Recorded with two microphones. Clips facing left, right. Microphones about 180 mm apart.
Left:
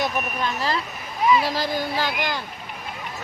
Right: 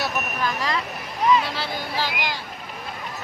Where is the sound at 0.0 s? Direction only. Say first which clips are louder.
Left 1 dB; 30° left (ahead or behind).